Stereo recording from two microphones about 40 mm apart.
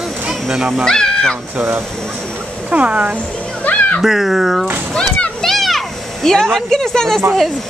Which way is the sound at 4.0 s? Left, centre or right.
Centre.